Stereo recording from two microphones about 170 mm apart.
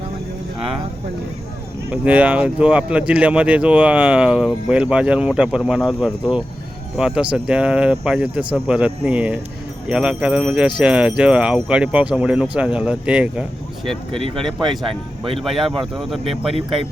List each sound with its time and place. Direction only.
1.9 s speech: 10° right (ahead or behind)
14.1 s speech: 30° right (ahead or behind)
14.3 s speech: centre (ahead or behind)
16.5 s speech: 35° right (ahead or behind)